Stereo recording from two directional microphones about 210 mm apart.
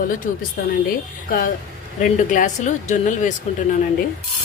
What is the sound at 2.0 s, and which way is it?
Speech, 40° left (ahead or behind).